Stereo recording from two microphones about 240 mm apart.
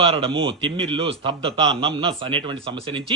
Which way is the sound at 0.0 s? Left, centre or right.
Right.